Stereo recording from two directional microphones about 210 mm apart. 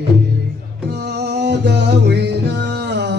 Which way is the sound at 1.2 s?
55° right (ahead or behind).